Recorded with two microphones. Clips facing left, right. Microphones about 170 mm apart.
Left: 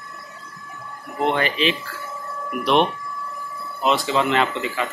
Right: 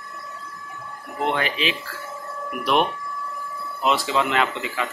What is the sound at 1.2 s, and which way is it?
Speech, centre (ahead or behind).